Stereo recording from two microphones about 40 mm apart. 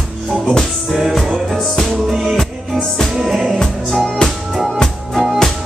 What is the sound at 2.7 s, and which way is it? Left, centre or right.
Music, centre.